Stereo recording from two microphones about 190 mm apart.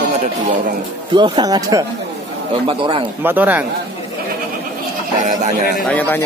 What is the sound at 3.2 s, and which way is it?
Speech, 10° right (ahead or behind).